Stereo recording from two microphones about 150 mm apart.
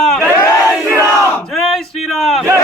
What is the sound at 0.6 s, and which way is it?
Battle cry, 5° right (ahead or behind).